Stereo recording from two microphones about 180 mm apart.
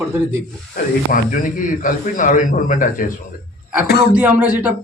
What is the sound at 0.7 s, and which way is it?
A man's voice, 50° left (ahead or behind).